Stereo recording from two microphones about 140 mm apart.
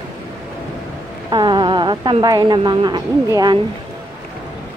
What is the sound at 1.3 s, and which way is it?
A woman's voice, 30° right (ahead or behind).